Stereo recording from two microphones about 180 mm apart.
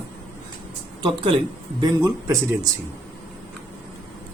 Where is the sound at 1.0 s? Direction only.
30° right (ahead or behind).